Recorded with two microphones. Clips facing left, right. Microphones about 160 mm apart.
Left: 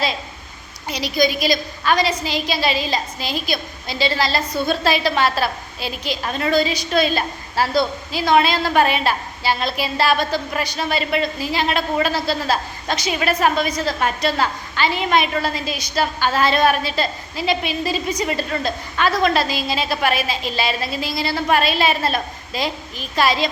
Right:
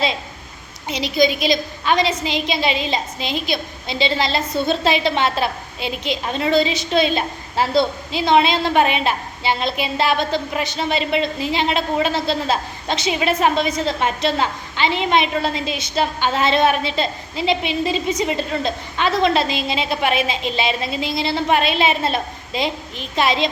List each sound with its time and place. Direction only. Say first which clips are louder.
0.9 s a woman's voice: right 2 dB; 20° right (ahead or behind)